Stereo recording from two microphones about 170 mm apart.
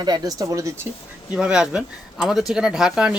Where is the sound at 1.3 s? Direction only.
5° right (ahead or behind).